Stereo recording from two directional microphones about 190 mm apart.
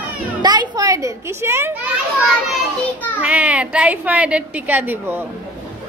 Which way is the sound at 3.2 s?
10° right (ahead or behind).